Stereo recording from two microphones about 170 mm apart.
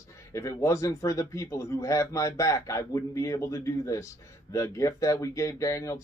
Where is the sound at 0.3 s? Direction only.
15° left (ahead or behind).